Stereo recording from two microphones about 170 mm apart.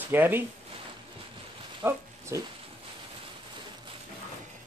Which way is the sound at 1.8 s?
15° right (ahead or behind).